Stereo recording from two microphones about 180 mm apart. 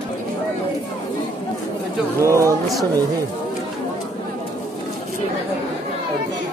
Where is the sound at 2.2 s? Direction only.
15° right (ahead or behind).